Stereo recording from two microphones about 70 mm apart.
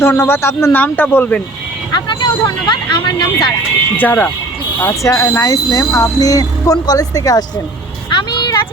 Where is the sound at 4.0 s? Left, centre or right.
Left.